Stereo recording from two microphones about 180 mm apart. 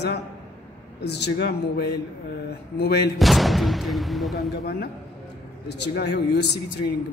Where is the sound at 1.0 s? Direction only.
70° left (ahead or behind).